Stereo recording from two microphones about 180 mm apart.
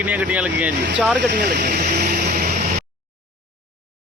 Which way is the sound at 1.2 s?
70° right (ahead or behind).